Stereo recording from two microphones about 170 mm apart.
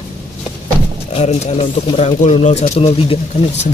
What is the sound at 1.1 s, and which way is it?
Speech, 40° left (ahead or behind).